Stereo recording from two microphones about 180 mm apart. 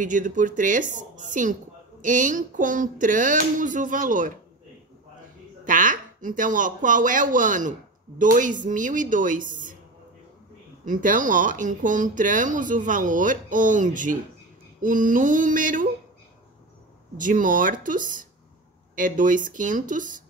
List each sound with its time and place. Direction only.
0.0 s a woman's voice: 45° right (ahead or behind)
5.7 s a woman's voice: 45° right (ahead or behind)
10.9 s a woman's voice: 45° right (ahead or behind)
17.2 s a woman's voice: 45° right (ahead or behind)